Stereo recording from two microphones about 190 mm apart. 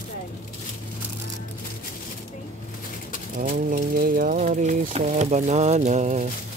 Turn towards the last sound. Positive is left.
turn(degrees=-40)  # may be behind; listen again after turning